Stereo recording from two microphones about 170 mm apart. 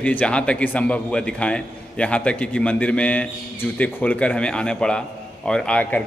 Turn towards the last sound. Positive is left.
turn(degrees=10)  # may be behind; listen again after turning